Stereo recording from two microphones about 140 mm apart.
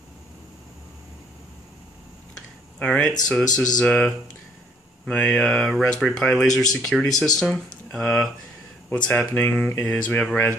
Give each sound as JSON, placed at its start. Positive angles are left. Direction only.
{"t": 2.8, "sound": "speech", "side_deg": 5}